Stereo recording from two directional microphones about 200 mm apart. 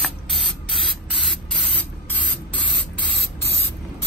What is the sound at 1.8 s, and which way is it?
Spray, 5° left (ahead or behind).